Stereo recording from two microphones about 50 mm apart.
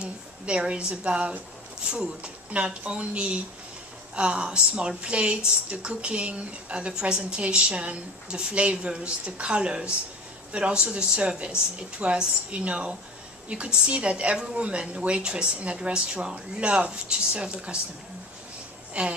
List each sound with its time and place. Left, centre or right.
0.0 s a woman's voice: centre
18.9 s a woman's voice: right